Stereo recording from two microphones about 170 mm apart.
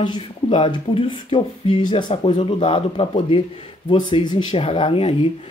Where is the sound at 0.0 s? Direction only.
30° left (ahead or behind).